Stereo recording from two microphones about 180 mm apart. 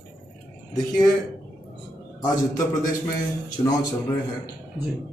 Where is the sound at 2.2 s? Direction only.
20° left (ahead or behind).